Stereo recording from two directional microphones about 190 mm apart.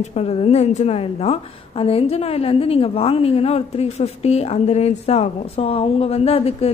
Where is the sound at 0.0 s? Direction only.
35° left (ahead or behind).